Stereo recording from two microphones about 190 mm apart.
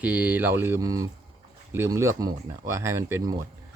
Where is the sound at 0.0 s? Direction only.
5° right (ahead or behind).